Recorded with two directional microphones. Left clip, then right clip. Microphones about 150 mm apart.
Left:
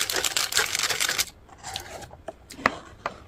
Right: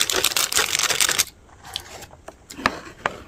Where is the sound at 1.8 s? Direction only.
5° right (ahead or behind).